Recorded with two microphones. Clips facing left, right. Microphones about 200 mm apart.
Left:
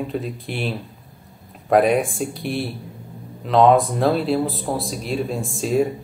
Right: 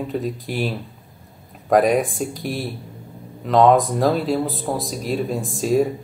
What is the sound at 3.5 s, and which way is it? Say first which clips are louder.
Speech: even; centre (ahead or behind).